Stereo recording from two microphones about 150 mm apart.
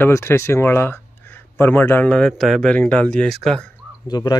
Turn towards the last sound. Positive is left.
turn(degrees=25)  # may be behind; listen again after turning